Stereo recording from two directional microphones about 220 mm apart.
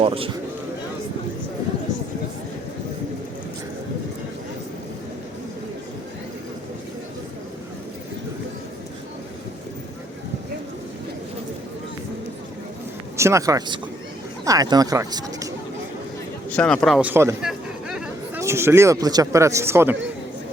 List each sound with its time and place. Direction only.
0.0 s speech: 25° right (ahead or behind)
13.1 s speech: 15° right (ahead or behind)
16.5 s speech: 5° left (ahead or behind); by 20.0 s 10° right (ahead or behind)